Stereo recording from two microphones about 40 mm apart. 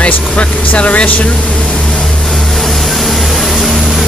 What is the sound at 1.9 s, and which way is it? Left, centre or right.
Vehicle, centre.